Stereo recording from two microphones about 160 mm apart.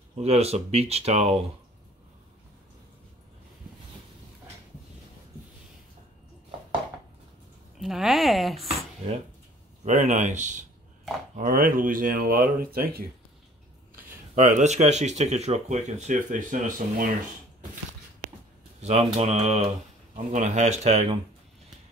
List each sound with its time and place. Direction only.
0.2 s speech: 40° right (ahead or behind)
7.8 s speech: centre (ahead or behind)
9.8 s speech: 50° right (ahead or behind)
11.3 s speech: 65° right (ahead or behind)
14.3 s speech: 50° right (ahead or behind)
18.8 s speech: 45° right (ahead or behind)